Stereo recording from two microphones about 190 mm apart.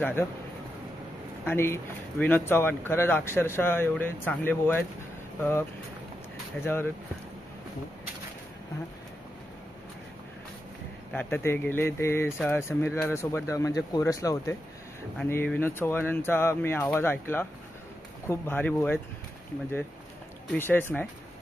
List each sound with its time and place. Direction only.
0.0 s speech: 10° left (ahead or behind)
1.4 s speech: 10° left (ahead or behind)
11.1 s speech: 10° left (ahead or behind)
20.5 s speech: 10° left (ahead or behind)